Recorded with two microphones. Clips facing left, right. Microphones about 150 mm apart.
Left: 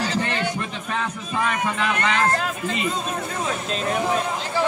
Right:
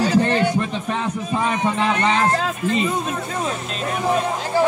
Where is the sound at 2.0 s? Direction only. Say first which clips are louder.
Right 3 dB; 25° right (ahead or behind).